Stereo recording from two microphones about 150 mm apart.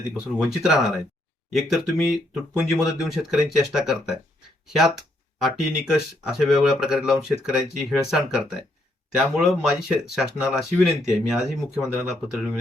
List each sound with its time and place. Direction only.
0.4 s speech: 5° right (ahead or behind)